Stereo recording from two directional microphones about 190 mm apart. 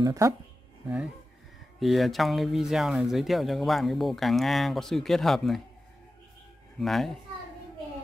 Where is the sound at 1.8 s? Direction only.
Centre (ahead or behind).